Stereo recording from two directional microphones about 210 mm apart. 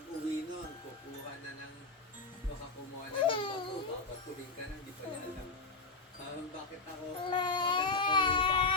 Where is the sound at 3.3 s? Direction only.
25° left (ahead or behind).